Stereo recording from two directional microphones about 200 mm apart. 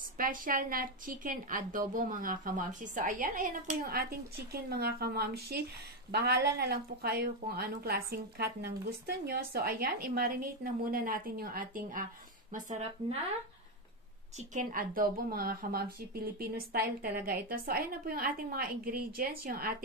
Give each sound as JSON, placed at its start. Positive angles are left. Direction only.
{"t": 0.2, "sound": "a woman's voice", "side_deg": -40}
{"t": 14.5, "sound": "a woman's voice", "side_deg": -40}